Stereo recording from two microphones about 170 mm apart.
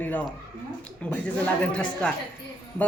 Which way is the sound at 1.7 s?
5° left (ahead or behind).